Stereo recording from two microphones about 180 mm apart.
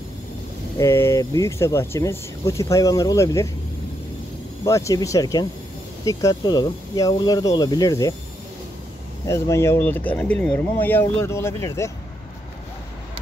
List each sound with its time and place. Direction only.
0.7 s speech: 15° left (ahead or behind)
4.6 s speech: 20° left (ahead or behind)
9.2 s speech: 15° left (ahead or behind)